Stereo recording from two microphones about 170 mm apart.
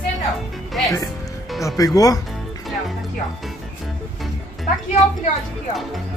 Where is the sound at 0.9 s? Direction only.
20° left (ahead or behind).